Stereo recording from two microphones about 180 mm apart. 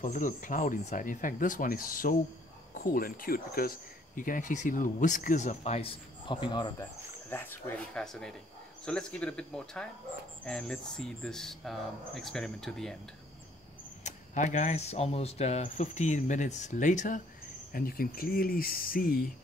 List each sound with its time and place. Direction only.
0.0 s speech: 50° left (ahead or behind); by 6.7 s 25° left (ahead or behind)
6.8 s speech: 10° left (ahead or behind)
14.0 s speech: 45° left (ahead or behind)